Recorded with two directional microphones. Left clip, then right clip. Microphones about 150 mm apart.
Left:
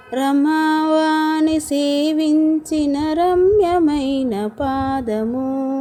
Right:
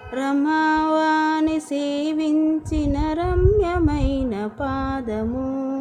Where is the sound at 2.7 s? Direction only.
25° left (ahead or behind).